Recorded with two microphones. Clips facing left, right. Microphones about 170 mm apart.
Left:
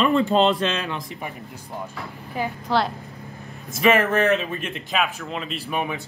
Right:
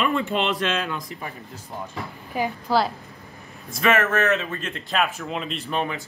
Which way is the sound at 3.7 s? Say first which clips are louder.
Left 2 dB; 15° left (ahead or behind).